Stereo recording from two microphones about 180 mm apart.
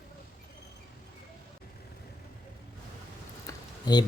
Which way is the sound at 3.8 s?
25° left (ahead or behind).